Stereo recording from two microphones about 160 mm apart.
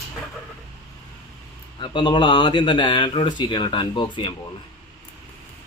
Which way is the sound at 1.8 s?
30° left (ahead or behind).